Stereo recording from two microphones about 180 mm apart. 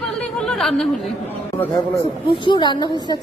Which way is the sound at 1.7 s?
25° left (ahead or behind).